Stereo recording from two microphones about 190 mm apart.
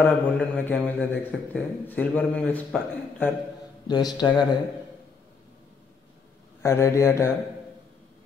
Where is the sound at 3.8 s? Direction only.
20° left (ahead or behind).